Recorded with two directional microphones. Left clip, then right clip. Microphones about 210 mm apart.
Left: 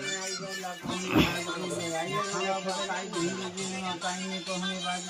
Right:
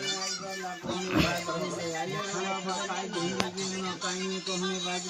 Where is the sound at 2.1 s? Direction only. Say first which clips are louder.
Left 3 dB; 15° left (ahead or behind).